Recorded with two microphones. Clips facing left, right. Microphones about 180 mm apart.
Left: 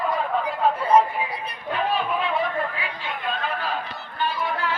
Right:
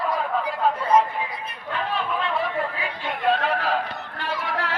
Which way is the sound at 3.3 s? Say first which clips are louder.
Right 6 dB; 85° right.